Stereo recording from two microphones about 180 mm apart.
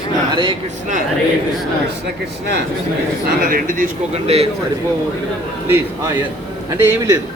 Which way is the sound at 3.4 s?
50° right (ahead or behind).